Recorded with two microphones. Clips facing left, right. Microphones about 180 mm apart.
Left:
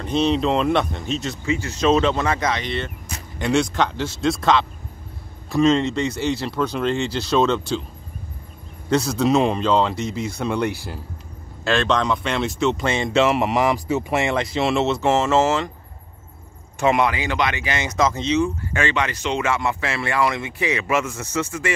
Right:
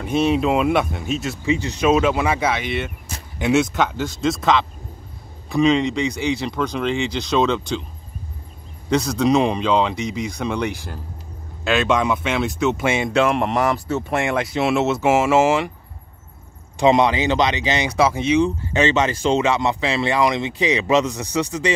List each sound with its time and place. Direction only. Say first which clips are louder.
0.0 s speech: right 1 dB; 5° right (ahead or behind)
1.4 s speech: right 2 dB; 20° right (ahead or behind); by 7.8 s centre (ahead or behind)
8.9 s speech: right 1 dB; 5° left (ahead or behind)
11.6 s speech: right 1 dB; 5° right (ahead or behind)
16.8 s speech: right 4 dB; 20° right (ahead or behind)
18.7 s speech: right 5 dB; 20° right (ahead or behind)